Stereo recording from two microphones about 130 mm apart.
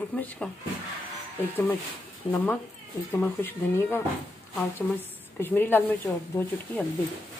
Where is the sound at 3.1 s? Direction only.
15° left (ahead or behind).